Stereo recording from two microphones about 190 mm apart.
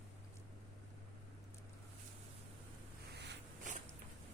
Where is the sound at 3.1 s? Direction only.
65° right (ahead or behind).